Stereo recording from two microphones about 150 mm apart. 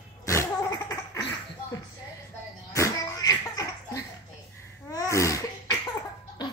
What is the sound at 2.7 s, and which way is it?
Laughter, 20° left (ahead or behind).